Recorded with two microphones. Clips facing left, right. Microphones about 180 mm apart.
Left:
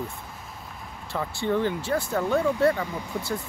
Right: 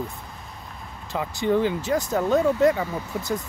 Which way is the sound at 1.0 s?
15° right (ahead or behind).